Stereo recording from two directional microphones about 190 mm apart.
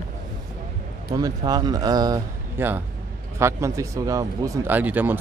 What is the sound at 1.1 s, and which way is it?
Speech, 20° right (ahead or behind).